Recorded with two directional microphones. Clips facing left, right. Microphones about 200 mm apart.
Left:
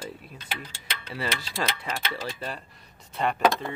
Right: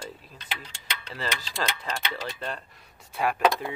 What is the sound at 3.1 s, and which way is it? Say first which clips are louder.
Speech: even; 5° right (ahead or behind).